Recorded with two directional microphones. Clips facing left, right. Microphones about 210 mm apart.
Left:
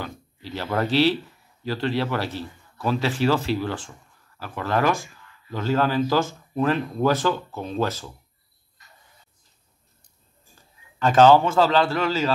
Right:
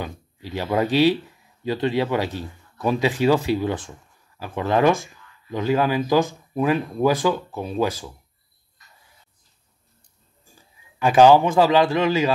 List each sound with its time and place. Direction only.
0.0 s speech: 15° right (ahead or behind)
10.5 s a man's voice: 10° right (ahead or behind)